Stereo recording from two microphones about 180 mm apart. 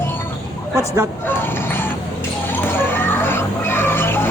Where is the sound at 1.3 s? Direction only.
10° left (ahead or behind).